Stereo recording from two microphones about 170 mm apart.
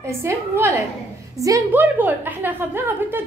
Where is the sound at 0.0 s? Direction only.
15° right (ahead or behind).